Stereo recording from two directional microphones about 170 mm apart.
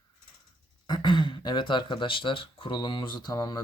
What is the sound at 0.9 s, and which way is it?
Speech, 25° left (ahead or behind).